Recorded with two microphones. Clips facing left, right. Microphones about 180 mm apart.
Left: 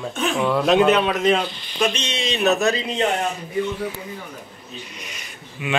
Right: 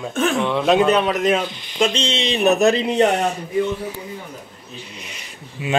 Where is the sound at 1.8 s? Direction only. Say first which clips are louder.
Right 3 dB; 30° right (ahead or behind).